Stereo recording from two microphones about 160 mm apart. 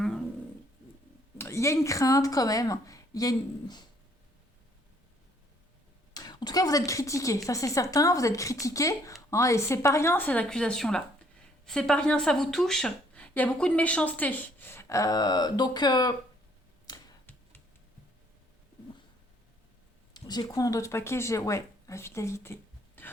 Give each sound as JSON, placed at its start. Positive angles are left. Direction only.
{"t": 1.4, "sound": "speech", "side_deg": 15}
{"t": 6.1, "sound": "speech", "side_deg": 25}
{"t": 16.8, "sound": "tick-tock", "side_deg": 25}
{"t": 20.1, "sound": "speech", "side_deg": 25}